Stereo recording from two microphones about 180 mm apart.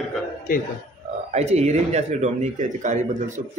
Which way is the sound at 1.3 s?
40° right (ahead or behind).